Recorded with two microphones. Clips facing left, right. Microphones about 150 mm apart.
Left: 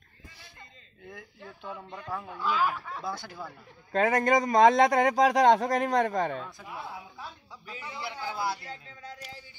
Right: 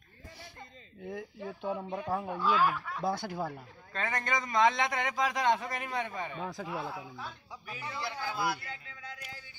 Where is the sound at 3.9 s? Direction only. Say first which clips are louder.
Left 10 dB; 45° left (ahead or behind).